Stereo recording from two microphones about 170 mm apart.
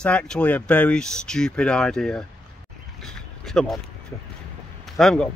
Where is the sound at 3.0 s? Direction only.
5° left (ahead or behind).